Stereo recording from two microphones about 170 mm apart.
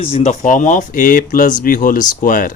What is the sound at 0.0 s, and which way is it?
Speech, 40° left (ahead or behind).